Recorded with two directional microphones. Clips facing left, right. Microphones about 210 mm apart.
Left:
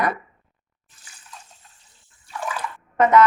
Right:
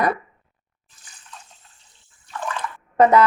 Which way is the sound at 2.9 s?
35° right (ahead or behind).